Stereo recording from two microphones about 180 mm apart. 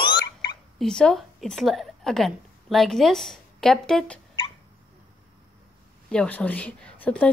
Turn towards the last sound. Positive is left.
turn(degrees=10)  # may be behind; listen again after turning